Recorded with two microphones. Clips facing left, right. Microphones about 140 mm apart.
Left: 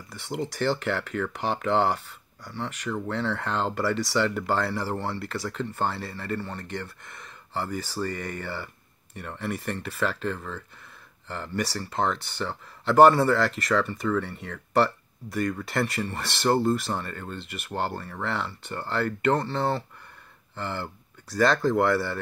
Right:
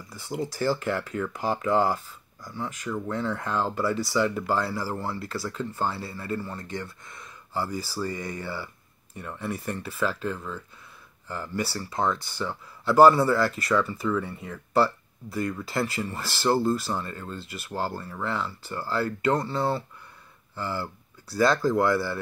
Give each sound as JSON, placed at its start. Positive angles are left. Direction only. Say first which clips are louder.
{"t": 0.1, "sound": "speech", "louder": "even", "side_deg": 70}
{"t": 11.9, "sound": "speech", "louder": "right 1 dB", "side_deg": 70}